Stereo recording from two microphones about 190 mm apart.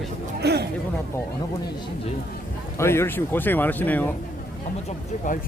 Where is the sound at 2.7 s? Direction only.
15° left (ahead or behind).